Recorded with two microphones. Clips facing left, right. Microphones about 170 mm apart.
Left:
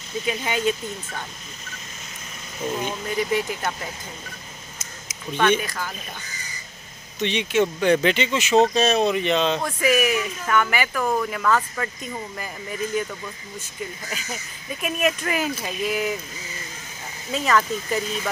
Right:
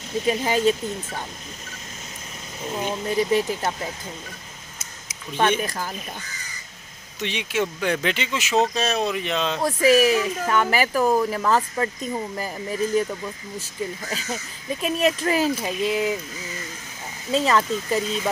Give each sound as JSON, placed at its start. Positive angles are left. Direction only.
{"t": 0.2, "sound": "speech", "side_deg": -35}
{"t": 2.9, "sound": "speech", "side_deg": -30}
{"t": 5.4, "sound": "speech", "side_deg": -40}
{"t": 7.2, "sound": "speech", "side_deg": -5}
{"t": 9.6, "sound": "speech", "side_deg": -35}
{"t": 14.1, "sound": "speech", "side_deg": -30}
{"t": 17.3, "sound": "speech", "side_deg": -25}